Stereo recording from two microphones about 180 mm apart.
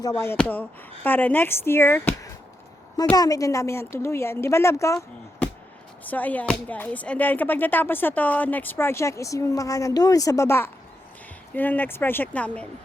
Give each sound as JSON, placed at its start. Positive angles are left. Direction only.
{"t": 0.0, "sound": "speech", "side_deg": 15}